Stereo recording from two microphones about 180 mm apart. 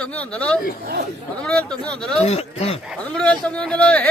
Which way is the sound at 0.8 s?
65° right (ahead or behind).